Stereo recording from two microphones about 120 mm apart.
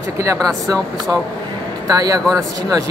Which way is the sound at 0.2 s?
25° right (ahead or behind).